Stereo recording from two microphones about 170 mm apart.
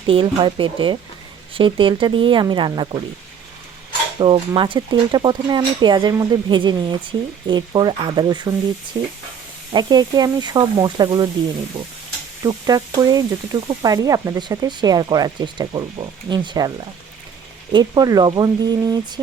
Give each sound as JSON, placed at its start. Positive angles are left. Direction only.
{"t": 0.1, "sound": "speech", "side_deg": -30}
{"t": 4.2, "sound": "speech", "side_deg": -30}
{"t": 12.5, "sound": "speech", "side_deg": -20}